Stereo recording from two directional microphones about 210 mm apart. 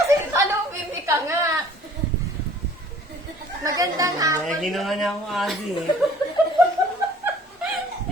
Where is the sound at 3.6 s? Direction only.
15° right (ahead or behind).